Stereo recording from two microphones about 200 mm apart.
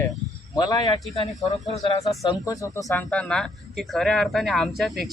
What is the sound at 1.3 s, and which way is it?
Speech, centre (ahead or behind).